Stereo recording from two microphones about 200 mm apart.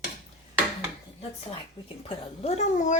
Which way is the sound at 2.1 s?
30° left (ahead or behind).